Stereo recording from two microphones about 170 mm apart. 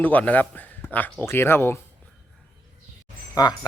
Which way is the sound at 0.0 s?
10° left (ahead or behind).